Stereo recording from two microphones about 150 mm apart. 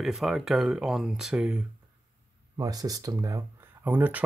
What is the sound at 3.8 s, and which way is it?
Speech, 10° right (ahead or behind).